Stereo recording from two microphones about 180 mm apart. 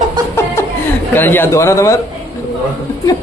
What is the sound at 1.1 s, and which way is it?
Speech, 10° left (ahead or behind).